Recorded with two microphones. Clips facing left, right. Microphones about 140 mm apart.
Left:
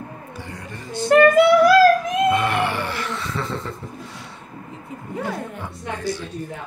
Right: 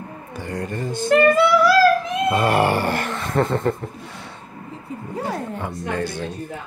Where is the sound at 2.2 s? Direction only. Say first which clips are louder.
Right 4 dB; 40° right (ahead or behind).